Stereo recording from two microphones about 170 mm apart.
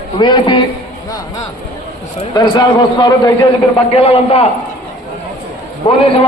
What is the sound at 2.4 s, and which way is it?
Speech, 25° left (ahead or behind).